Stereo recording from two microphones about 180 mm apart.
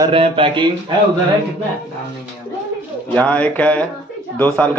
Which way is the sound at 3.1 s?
10° left (ahead or behind).